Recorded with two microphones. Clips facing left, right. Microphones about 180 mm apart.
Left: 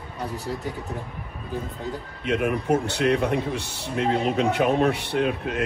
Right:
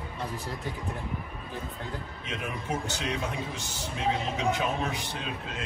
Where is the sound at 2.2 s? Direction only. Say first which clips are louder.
Left 13 dB; 65° left (ahead or behind).